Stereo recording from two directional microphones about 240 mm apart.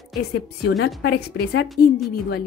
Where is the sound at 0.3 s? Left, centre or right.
Left.